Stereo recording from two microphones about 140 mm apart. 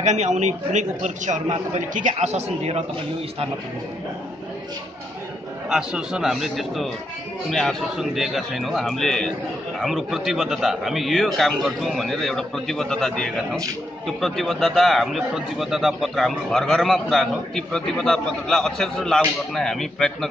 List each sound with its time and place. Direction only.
0.0 s a man's voice: 55° right (ahead or behind)
5.7 s a man's voice: 5° right (ahead or behind)